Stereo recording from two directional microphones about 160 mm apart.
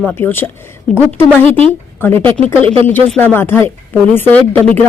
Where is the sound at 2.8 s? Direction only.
10° left (ahead or behind).